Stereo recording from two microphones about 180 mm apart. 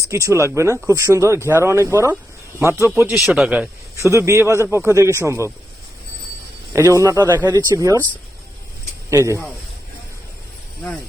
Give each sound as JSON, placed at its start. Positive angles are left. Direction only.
{"t": 0.1, "sound": "speech", "side_deg": -15}
{"t": 3.2, "sound": "speech", "side_deg": -5}
{"t": 6.7, "sound": "speech", "side_deg": -15}
{"t": 9.0, "sound": "speech", "side_deg": -15}